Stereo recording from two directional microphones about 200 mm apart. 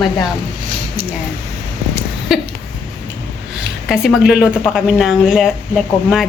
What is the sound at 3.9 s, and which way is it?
Speech, centre (ahead or behind).